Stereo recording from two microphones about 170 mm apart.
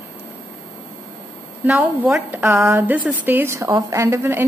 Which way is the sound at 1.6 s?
10° right (ahead or behind).